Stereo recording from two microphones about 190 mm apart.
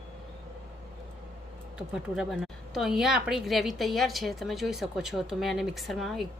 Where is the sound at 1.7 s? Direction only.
Centre (ahead or behind).